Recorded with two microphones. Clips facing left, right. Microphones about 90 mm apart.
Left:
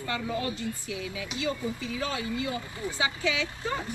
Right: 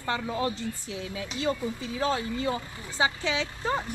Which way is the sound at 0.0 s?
35° right (ahead or behind).